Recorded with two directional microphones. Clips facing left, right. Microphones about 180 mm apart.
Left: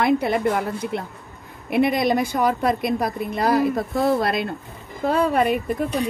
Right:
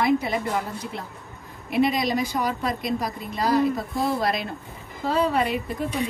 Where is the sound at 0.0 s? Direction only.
60° left (ahead or behind).